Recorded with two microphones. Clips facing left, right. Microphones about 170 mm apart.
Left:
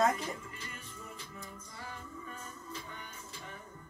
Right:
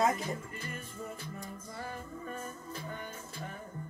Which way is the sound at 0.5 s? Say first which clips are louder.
Right 5 dB; 50° right (ahead or behind).